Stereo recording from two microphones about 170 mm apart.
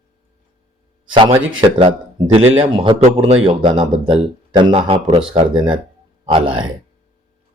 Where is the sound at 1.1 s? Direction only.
30° right (ahead or behind).